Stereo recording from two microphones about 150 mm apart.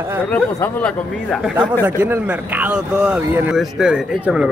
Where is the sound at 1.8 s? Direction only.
10° right (ahead or behind).